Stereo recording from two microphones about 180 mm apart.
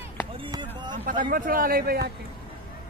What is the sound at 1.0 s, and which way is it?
A man's voice, 50° right (ahead or behind).